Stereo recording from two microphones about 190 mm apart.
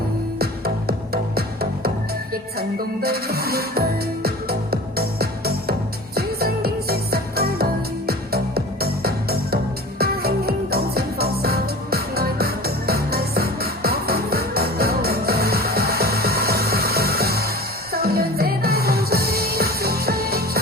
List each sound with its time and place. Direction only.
0.3 s music: 55° right (ahead or behind)